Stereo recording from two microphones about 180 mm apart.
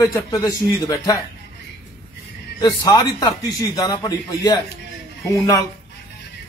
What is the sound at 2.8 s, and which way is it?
A man's voice, 20° left (ahead or behind).